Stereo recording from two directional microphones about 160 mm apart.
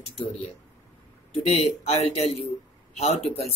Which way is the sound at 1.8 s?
40° left (ahead or behind).